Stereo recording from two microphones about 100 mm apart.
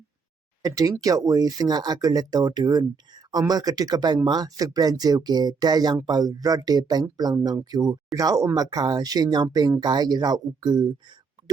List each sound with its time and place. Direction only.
0.6 s speech: 35° right (ahead or behind)